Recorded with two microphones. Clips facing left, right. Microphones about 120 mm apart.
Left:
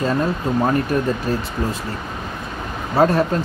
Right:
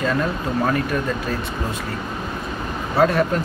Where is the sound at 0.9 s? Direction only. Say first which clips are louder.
Left 3 dB; 35° left (ahead or behind).